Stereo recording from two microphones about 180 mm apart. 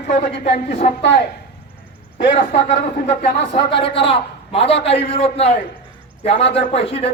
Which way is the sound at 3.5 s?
30° left (ahead or behind).